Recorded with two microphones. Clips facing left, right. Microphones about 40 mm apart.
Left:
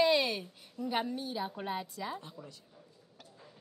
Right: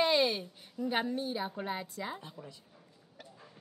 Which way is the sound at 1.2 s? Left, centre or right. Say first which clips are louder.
Right 2 dB; right.